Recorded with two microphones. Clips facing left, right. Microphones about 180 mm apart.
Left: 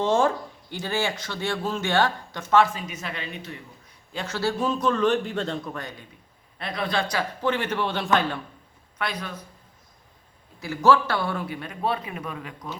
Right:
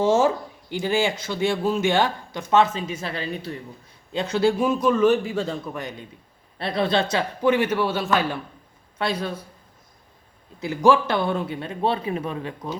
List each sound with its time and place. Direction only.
0.0 s speech: 5° right (ahead or behind); by 3.6 s 35° right (ahead or behind)
4.1 s speech: 20° right (ahead or behind); by 5.8 s 5° right (ahead or behind)
6.6 s a man's voice: 30° right (ahead or behind)
7.4 s speech: 10° right (ahead or behind)
9.0 s a man's voice: 30° right (ahead or behind)
10.6 s a man's voice: 15° right (ahead or behind)